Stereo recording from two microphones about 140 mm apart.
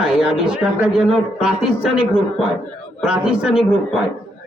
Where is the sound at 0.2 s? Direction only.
5° right (ahead or behind).